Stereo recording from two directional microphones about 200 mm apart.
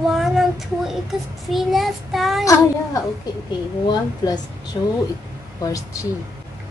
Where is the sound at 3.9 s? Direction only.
20° left (ahead or behind).